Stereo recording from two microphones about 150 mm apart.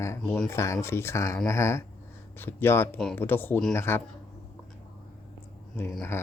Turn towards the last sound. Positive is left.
turn(degrees=15)  # may be behind; listen again after turning